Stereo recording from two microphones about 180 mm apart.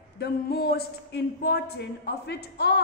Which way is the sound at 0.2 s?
60° left (ahead or behind).